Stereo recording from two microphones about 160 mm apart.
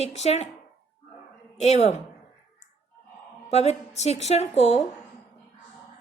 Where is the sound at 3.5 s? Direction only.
40° left (ahead or behind).